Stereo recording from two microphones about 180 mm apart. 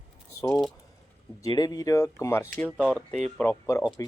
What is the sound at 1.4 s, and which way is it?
Speech, 20° left (ahead or behind).